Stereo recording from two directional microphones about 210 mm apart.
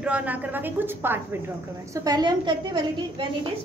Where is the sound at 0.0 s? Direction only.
5° right (ahead or behind).